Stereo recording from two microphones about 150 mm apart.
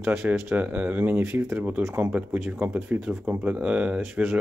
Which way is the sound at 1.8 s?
20° right (ahead or behind).